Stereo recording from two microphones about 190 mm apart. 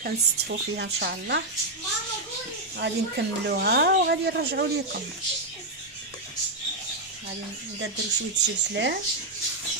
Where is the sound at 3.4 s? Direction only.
60° right (ahead or behind).